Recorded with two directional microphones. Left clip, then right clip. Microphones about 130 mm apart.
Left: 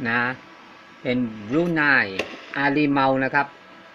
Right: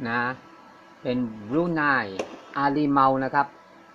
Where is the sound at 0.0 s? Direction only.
10° left (ahead or behind).